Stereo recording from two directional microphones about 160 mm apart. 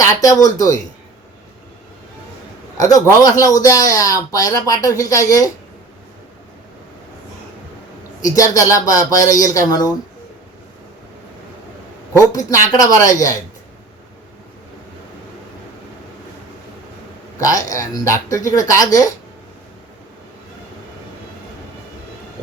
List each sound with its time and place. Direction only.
0.0 s speech: 20° left (ahead or behind)
2.7 s a man's voice: 20° left (ahead or behind)
8.2 s a man's voice: 20° left (ahead or behind)
12.3 s a man's voice: 20° left (ahead or behind)
17.4 s a man's voice: 20° left (ahead or behind)